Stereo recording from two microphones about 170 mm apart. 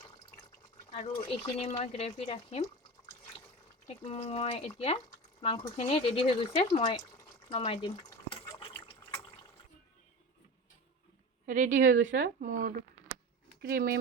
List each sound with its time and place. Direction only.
1.3 s speech: 35° left (ahead or behind)
3.8 s speech: 35° left (ahead or behind)
7.5 s water: 35° left (ahead or behind)
11.4 s a woman's voice: 50° right (ahead or behind)
13.6 s speech: 65° right (ahead or behind)